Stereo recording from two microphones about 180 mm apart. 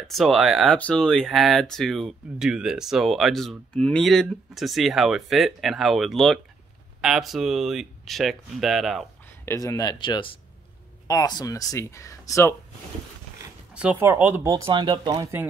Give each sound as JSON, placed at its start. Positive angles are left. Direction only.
{"t": 0.0, "sound": "speech", "side_deg": 0}
{"t": 9.5, "sound": "speech", "side_deg": 15}
{"t": 13.7, "sound": "speech", "side_deg": -10}
{"t": 14.7, "sound": "speech", "side_deg": -25}